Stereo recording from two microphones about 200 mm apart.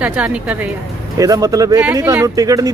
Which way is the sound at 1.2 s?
15° right (ahead or behind).